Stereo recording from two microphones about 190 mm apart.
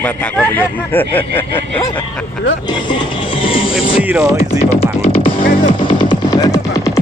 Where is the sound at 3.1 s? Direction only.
25° left (ahead or behind).